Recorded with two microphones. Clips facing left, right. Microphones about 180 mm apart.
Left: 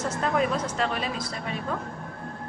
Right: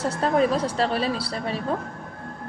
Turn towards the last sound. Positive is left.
turn(degrees=-35)  # may be behind; listen again after turning